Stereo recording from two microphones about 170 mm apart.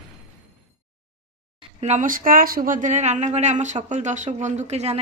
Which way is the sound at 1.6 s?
40° right (ahead or behind).